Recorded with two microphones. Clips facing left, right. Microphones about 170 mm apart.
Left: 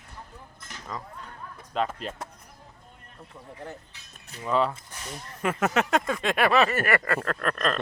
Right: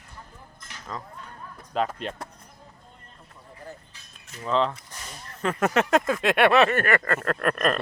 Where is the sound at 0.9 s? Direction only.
Centre (ahead or behind).